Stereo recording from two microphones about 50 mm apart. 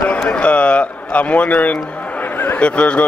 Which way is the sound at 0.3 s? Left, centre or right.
Left.